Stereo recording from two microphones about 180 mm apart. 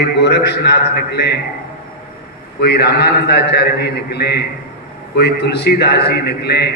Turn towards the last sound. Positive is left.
turn(degrees=65)  # may be behind; listen again after turning